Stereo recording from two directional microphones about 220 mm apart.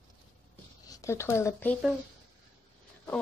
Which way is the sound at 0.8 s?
15° left (ahead or behind).